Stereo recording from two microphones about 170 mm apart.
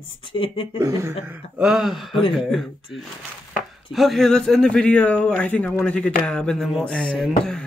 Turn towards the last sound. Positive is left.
turn(degrees=5)  # may be behind; listen again after turning